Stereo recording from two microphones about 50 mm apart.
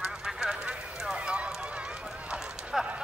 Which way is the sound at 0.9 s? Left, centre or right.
Centre.